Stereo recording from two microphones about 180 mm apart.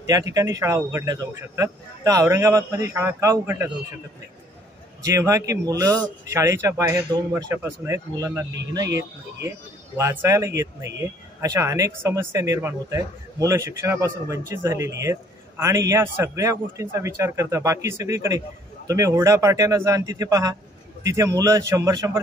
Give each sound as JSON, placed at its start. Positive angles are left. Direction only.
{"t": 0.0, "sound": "speech", "side_deg": -20}
{"t": 5.0, "sound": "a man's voice", "side_deg": -15}